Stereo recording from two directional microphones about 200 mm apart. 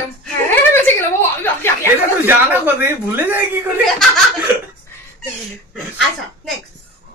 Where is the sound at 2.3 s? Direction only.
10° right (ahead or behind).